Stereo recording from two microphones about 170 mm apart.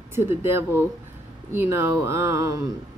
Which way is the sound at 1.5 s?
15° right (ahead or behind).